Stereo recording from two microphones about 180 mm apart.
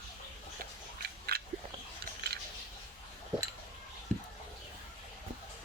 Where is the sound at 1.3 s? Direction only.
60° right (ahead or behind).